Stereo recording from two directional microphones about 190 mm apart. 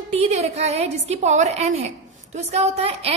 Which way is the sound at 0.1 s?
35° right (ahead or behind).